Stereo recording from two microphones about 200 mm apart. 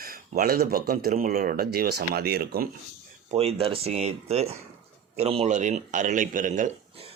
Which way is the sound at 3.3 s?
30° right (ahead or behind).